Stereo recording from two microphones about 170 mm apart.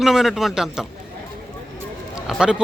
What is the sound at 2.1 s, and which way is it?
Speech, 5° right (ahead or behind).